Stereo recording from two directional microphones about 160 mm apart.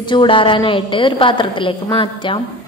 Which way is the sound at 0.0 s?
30° left (ahead or behind).